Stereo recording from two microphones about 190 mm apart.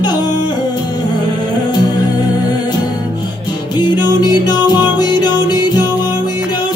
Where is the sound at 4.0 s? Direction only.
20° left (ahead or behind).